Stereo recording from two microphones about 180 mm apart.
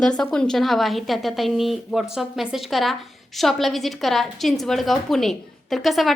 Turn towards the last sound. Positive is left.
turn(degrees=0)  # may be behind; listen again after turning